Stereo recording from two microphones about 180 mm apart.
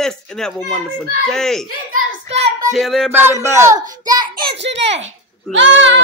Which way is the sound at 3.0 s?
15° right (ahead or behind).